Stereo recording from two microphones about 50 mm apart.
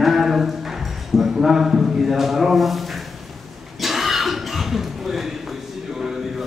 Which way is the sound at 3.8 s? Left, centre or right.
Centre.